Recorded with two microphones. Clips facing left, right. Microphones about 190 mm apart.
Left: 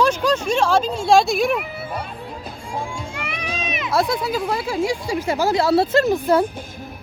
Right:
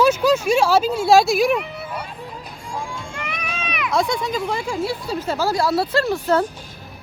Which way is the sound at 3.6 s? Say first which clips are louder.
Right 3 dB; 25° left (ahead or behind).